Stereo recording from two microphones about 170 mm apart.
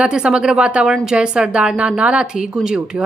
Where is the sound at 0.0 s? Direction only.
5° right (ahead or behind).